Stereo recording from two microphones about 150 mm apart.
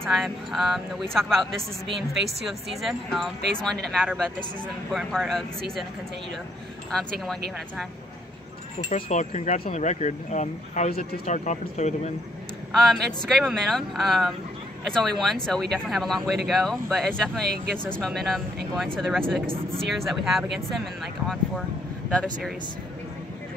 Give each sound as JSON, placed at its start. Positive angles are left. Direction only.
{"t": 0.0, "sound": "speech", "side_deg": 0}
{"t": 6.9, "sound": "speech", "side_deg": 5}
{"t": 8.8, "sound": "speech", "side_deg": 45}
{"t": 10.9, "sound": "speech", "side_deg": 85}
{"t": 11.2, "sound": "speech", "side_deg": 50}
{"t": 12.7, "sound": "speech", "side_deg": 0}